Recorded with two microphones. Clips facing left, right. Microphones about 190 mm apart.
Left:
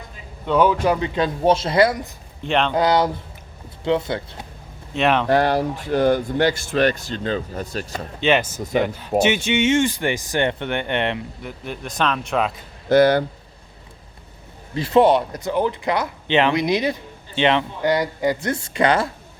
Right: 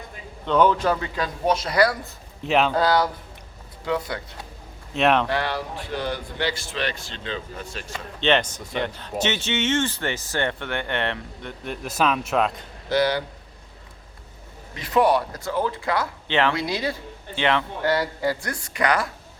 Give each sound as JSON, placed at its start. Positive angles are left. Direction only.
{"t": 0.4, "sound": "speech", "side_deg": 10}
{"t": 2.4, "sound": "speech", "side_deg": -5}
{"t": 2.7, "sound": "speech", "side_deg": 20}
{"t": 4.9, "sound": "speech", "side_deg": 0}
{"t": 5.3, "sound": "speech", "side_deg": 45}
{"t": 8.2, "sound": "speech", "side_deg": 5}
{"t": 11.4, "sound": "speech", "side_deg": 0}
{"t": 12.9, "sound": "speech", "side_deg": 50}
{"t": 14.8, "sound": "speech", "side_deg": 25}